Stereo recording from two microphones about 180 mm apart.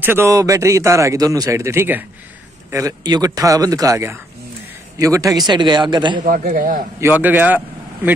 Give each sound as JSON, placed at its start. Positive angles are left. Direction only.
{"t": 0.0, "sound": "a man's voice", "side_deg": -15}
{"t": 6.2, "sound": "a man's voice", "side_deg": -50}
{"t": 7.0, "sound": "speech", "side_deg": -10}